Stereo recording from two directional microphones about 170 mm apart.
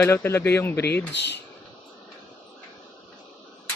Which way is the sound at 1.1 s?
90° left.